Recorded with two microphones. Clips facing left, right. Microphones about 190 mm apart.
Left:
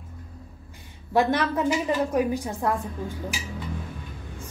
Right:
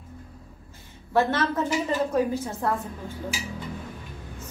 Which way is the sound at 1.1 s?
15° left (ahead or behind).